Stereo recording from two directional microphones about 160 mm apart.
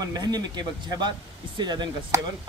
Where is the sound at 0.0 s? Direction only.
25° right (ahead or behind).